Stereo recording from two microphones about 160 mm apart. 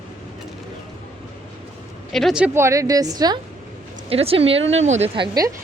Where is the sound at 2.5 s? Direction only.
20° right (ahead or behind).